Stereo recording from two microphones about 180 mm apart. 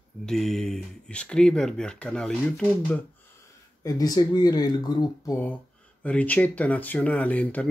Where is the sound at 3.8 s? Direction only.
20° left (ahead or behind).